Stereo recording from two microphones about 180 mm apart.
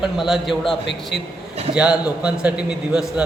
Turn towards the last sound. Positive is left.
turn(degrees=-5)  # may be behind; listen again after turning